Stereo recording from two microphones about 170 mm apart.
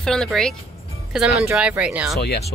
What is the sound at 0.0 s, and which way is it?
Speech, 5° left (ahead or behind).